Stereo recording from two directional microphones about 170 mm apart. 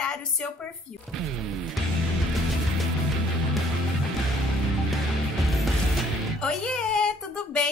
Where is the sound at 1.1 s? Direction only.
Centre (ahead or behind).